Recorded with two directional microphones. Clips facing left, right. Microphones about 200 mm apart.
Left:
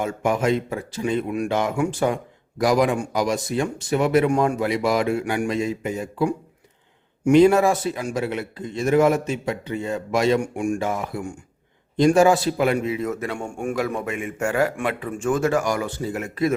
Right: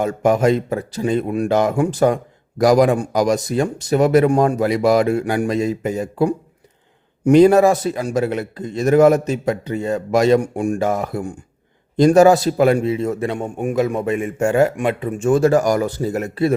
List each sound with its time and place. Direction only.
0.0 s a man's voice: 40° right (ahead or behind)